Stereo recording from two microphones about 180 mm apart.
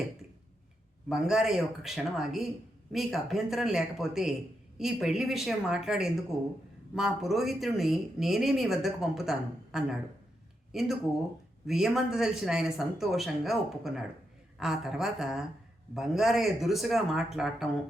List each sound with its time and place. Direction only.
1.0 s speech: 5° right (ahead or behind)